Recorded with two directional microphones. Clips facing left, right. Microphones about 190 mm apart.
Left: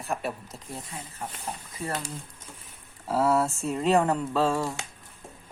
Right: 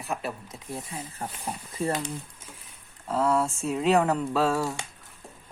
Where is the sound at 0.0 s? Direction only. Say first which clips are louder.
Left 1 dB; centre (ahead or behind).